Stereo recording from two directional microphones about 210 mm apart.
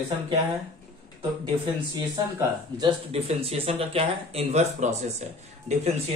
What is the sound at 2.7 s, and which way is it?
Speech, 30° right (ahead or behind).